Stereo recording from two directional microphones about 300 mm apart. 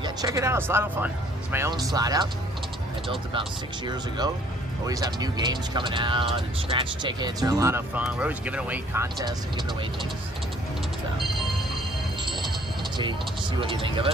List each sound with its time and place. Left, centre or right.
0.0 s speech: centre
13.6 s speech: centre